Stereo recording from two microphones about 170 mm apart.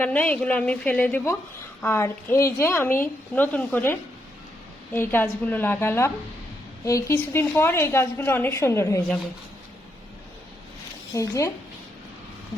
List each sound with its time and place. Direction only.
0.0 s a woman's voice: 10° left (ahead or behind)
4.9 s a woman's voice: 15° left (ahead or behind)
11.1 s a woman's voice: 20° left (ahead or behind)